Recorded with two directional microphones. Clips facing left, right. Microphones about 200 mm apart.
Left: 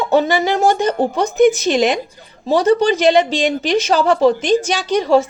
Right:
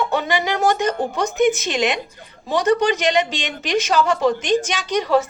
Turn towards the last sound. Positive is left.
turn(degrees=30)  # may be behind; listen again after turning